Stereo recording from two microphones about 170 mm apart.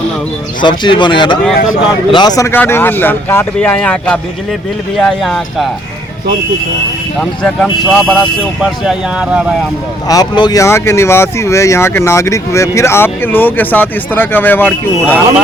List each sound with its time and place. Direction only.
0.6 s speech: 25° left (ahead or behind); by 5.7 s centre (ahead or behind)
7.2 s speech: 5° left (ahead or behind)
10.1 s speech: 25° left (ahead or behind)